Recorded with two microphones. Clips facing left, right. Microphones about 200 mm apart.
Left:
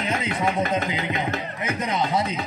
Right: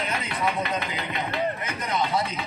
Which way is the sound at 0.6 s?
45° left (ahead or behind).